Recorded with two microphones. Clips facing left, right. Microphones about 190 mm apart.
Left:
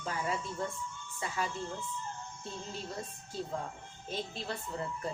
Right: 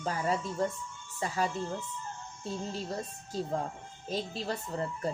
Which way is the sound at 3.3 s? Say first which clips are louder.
Right 5 dB; 40° right (ahead or behind).